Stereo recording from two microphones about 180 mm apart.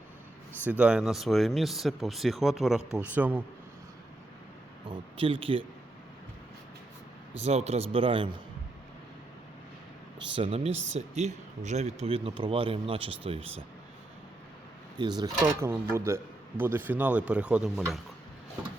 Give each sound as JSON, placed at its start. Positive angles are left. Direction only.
{"t": 0.7, "sound": "speech", "side_deg": -5}
{"t": 4.9, "sound": "speech", "side_deg": -30}
{"t": 7.3, "sound": "speech", "side_deg": -35}
{"t": 10.3, "sound": "speech", "side_deg": -30}
{"t": 14.9, "sound": "speech", "side_deg": -25}